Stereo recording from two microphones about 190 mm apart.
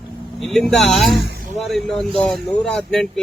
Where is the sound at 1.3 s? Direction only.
50° right (ahead or behind).